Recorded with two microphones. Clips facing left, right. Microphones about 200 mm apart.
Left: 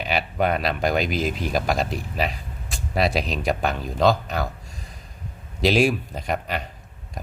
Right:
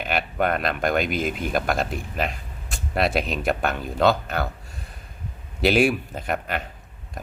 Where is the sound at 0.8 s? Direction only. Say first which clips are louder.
Right 1 dB; 55° right (ahead or behind).